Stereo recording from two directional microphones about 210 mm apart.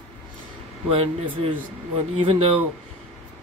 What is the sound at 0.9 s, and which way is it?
Speech, 25° right (ahead or behind).